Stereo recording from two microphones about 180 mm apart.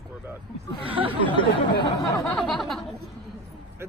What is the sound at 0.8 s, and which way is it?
Speech, 30° right (ahead or behind).